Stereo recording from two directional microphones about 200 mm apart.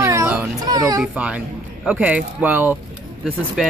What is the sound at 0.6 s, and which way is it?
Speech, 20° right (ahead or behind).